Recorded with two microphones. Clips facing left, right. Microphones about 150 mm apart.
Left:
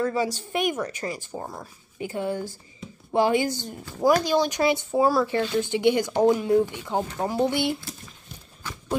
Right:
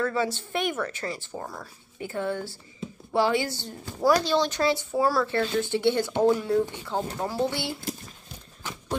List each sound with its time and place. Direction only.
0.0 s speech: 15° left (ahead or behind)